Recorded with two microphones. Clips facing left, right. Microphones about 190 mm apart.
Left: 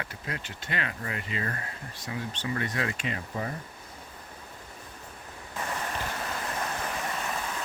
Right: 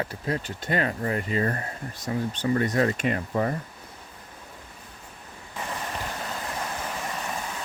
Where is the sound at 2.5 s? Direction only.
40° right (ahead or behind); by 3.5 s 55° right (ahead or behind).